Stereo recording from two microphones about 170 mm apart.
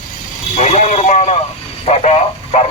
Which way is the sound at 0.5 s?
40° left (ahead or behind).